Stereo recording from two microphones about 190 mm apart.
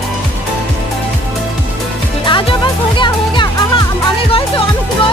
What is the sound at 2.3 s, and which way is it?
Music, 25° left (ahead or behind).